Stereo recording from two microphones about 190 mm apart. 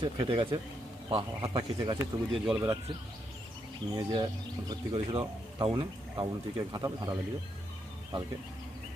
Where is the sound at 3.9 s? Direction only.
20° right (ahead or behind).